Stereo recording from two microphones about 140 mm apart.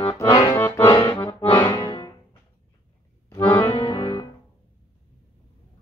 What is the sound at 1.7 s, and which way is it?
Music, 30° left (ahead or behind).